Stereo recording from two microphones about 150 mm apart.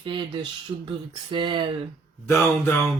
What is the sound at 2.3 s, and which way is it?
Speech, 15° left (ahead or behind).